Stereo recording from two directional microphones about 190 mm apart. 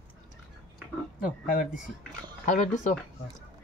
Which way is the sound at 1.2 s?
45° left (ahead or behind).